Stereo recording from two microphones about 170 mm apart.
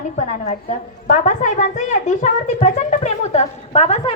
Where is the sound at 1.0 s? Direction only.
45° left (ahead or behind).